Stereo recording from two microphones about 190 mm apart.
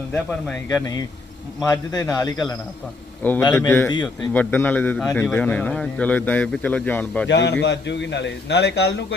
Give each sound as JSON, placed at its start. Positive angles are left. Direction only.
{"t": 0.1, "sound": "speech", "side_deg": 0}
{"t": 0.7, "sound": "a man's voice", "side_deg": 20}
{"t": 3.9, "sound": "a man's voice", "side_deg": 20}
{"t": 4.3, "sound": "a man's voice", "side_deg": 10}
{"t": 7.3, "sound": "a man's voice", "side_deg": 65}